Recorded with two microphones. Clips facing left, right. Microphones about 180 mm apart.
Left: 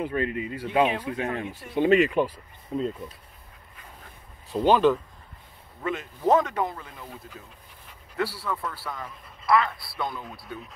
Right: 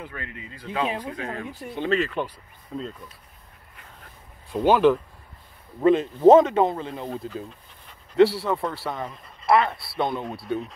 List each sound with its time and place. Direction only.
0.0 s speech: 20° left (ahead or behind)
1.1 s speech: 30° right (ahead or behind)
1.4 s speech: 15° left (ahead or behind)
4.6 s speech: 10° right (ahead or behind)
5.8 s speech: 25° right (ahead or behind)
8.2 s speech: 25° right (ahead or behind)